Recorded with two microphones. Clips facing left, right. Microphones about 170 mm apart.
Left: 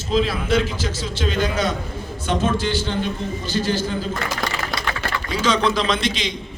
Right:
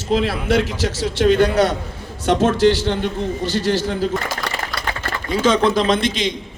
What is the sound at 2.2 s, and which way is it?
A man's voice, 80° right.